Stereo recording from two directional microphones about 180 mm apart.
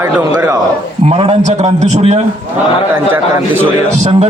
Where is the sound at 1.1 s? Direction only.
30° right (ahead or behind).